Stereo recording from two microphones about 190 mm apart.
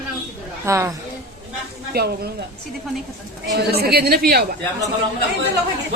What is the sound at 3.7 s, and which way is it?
Speech, 55° right (ahead or behind).